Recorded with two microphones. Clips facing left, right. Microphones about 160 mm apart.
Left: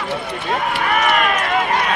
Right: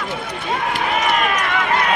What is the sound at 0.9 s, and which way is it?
Run, 50° left (ahead or behind).